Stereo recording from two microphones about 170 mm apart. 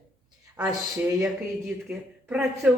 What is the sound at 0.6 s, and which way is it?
Speech, 15° right (ahead or behind).